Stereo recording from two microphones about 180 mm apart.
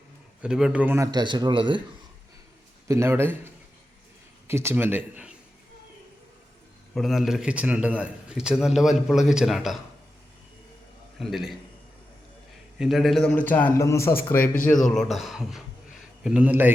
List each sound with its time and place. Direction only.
0.4 s a man's voice: 5° right (ahead or behind); by 1.8 s 25° right (ahead or behind)
2.8 s a man's voice: 15° right (ahead or behind)
6.9 s a man's voice: centre (ahead or behind)
11.2 s a man's voice: centre (ahead or behind)
12.8 s a man's voice: centre (ahead or behind)